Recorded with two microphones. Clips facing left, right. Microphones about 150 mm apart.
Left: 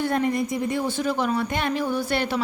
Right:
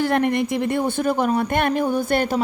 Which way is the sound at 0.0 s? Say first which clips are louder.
Right 4 dB; 70° right (ahead or behind).